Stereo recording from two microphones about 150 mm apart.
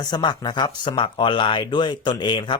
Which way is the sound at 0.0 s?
30° left (ahead or behind).